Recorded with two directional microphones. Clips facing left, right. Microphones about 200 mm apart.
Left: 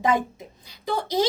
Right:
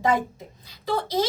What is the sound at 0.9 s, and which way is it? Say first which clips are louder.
Speech: even; 15° left (ahead or behind).